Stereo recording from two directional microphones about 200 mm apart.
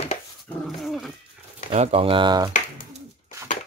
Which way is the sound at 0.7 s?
Centre (ahead or behind).